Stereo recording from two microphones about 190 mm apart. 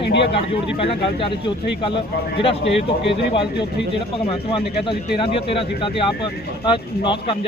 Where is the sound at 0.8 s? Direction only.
30° left (ahead or behind).